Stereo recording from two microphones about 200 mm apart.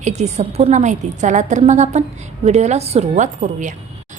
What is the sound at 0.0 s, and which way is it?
A woman's voice, 35° right (ahead or behind).